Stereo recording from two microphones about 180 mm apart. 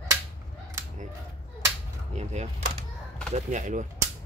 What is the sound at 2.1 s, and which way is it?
Speech, 40° right (ahead or behind).